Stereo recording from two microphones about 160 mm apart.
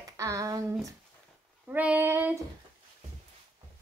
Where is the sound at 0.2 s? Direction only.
20° right (ahead or behind).